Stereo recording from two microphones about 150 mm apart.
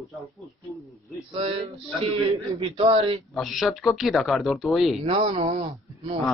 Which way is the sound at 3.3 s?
Centre (ahead or behind).